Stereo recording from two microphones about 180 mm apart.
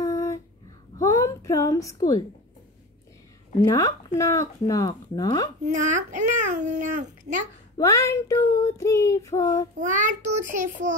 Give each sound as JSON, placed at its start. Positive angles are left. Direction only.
{"t": 0.0, "sound": "a sound", "side_deg": 15}
{"t": 0.9, "sound": "a woman's voice", "side_deg": 20}
{"t": 3.6, "sound": "speech", "side_deg": 20}
{"t": 5.7, "sound": "a child's voice", "side_deg": -45}
{"t": 7.7, "sound": "child singing", "side_deg": 15}
{"t": 9.8, "sound": "a child's voice", "side_deg": -45}